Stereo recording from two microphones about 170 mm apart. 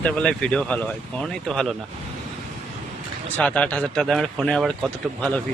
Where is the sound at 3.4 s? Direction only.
10° left (ahead or behind).